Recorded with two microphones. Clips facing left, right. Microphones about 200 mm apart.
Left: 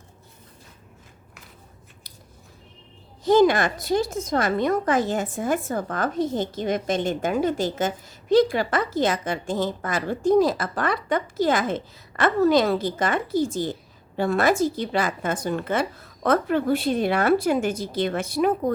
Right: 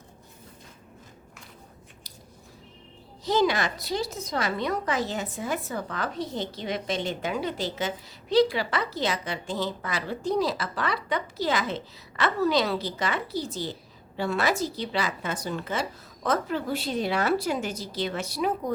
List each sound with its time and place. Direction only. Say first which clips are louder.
3.2 s a woman's voice: left 7 dB; 50° left (ahead or behind)